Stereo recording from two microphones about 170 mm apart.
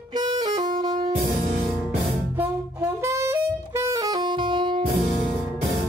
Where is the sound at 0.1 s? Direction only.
25° right (ahead or behind).